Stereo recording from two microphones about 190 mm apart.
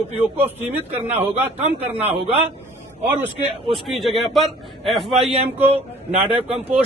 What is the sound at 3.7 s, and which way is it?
A man's voice, centre (ahead or behind).